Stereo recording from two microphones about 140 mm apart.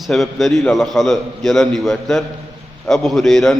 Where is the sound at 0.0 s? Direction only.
Centre (ahead or behind).